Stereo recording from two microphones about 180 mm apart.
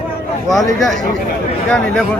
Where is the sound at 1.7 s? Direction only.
5° left (ahead or behind).